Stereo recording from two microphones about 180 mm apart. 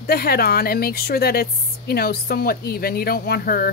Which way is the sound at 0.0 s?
55° left (ahead or behind).